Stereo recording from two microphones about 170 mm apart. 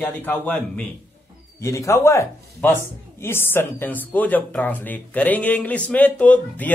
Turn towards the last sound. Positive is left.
turn(degrees=10)  # may be behind; listen again after turning